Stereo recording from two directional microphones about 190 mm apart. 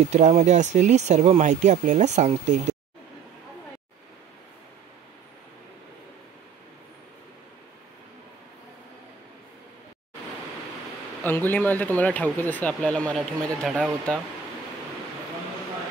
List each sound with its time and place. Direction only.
0.1 s speech: 35° right (ahead or behind)
11.2 s speech: 10° left (ahead or behind)